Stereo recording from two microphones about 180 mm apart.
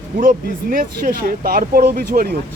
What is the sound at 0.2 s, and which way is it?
Speech, 50° right (ahead or behind).